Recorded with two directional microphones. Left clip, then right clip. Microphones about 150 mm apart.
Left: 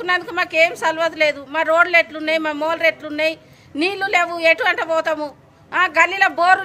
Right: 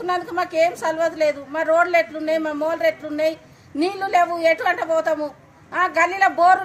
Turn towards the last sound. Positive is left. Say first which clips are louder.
# left 1 dB
turn(degrees=35)  # may be behind; listen again after turning